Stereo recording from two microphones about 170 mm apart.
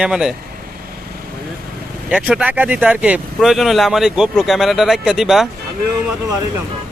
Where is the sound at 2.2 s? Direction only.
10° right (ahead or behind).